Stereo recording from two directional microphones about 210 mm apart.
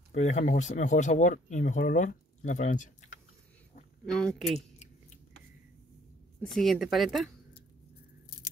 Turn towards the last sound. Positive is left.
turn(degrees=0)  # may be behind; listen again after turning